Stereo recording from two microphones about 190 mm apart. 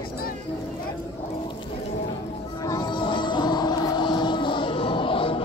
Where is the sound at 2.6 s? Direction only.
20° left (ahead or behind).